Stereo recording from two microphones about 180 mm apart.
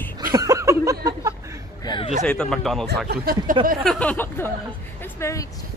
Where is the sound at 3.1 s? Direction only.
55° right (ahead or behind).